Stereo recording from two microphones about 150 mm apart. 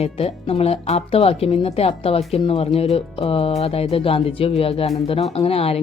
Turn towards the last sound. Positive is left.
turn(degrees=40)  # may be behind; listen again after turning